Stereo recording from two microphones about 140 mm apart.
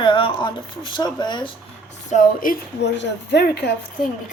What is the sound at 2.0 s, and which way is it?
Speech, 70° left (ahead or behind).